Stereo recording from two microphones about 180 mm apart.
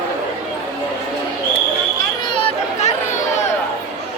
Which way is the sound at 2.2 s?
30° left (ahead or behind).